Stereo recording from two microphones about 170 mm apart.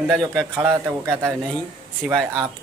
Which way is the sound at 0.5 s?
15° right (ahead or behind).